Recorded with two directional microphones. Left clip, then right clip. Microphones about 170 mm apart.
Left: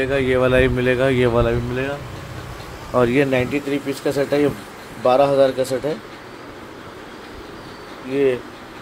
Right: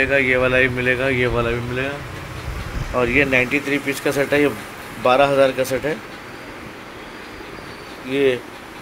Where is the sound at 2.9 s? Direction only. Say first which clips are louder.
Even; 40° left (ahead or behind).